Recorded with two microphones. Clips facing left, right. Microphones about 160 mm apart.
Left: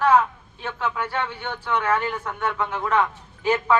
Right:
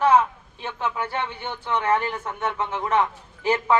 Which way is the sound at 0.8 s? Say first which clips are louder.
Left 1 dB; 20° right (ahead or behind).